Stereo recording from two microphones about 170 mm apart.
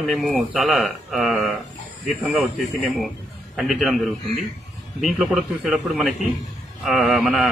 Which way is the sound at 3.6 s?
Centre (ahead or behind).